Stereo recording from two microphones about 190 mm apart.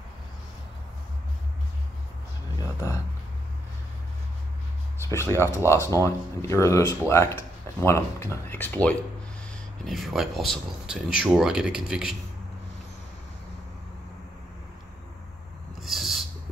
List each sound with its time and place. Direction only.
2.6 s a sound: 15° left (ahead or behind)
5.1 s speech: 15° left (ahead or behind); by 12.2 s 5° right (ahead or behind)
15.8 s owl: centre (ahead or behind)